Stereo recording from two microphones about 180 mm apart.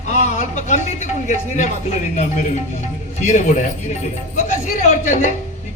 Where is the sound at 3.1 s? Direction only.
40° left (ahead or behind).